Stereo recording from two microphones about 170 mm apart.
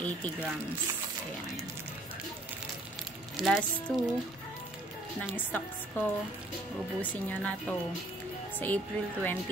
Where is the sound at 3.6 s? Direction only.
10° left (ahead or behind).